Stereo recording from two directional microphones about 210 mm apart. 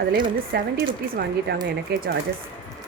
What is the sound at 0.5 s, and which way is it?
Speech, 50° right (ahead or behind).